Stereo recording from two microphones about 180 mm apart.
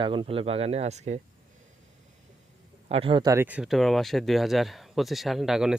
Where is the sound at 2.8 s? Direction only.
35° right (ahead or behind).